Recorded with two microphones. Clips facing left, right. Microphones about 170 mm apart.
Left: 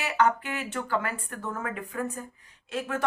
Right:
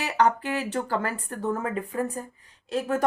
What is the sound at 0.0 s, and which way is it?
Speech, 35° right (ahead or behind).